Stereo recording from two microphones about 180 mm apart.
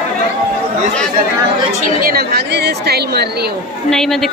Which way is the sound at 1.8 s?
55° right (ahead or behind).